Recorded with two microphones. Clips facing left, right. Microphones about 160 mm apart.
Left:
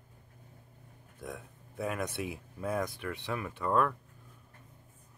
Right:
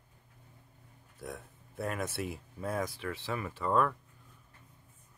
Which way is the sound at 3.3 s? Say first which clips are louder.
Even; centre (ahead or behind).